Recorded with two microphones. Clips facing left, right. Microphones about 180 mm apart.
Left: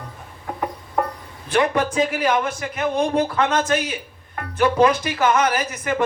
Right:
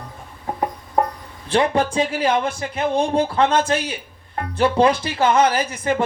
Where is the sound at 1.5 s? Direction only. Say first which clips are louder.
Right 1 dB; 30° right (ahead or behind).